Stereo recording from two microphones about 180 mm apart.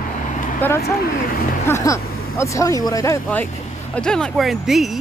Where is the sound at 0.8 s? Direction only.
55° left (ahead or behind).